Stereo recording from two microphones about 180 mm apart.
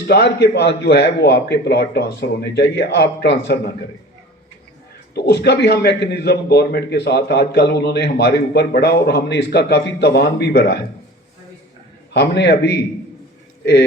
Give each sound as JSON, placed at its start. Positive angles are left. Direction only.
{"t": 0.1, "sound": "a man's voice", "side_deg": 65}
{"t": 5.1, "sound": "a man's voice", "side_deg": 65}
{"t": 12.1, "sound": "a man's voice", "side_deg": 65}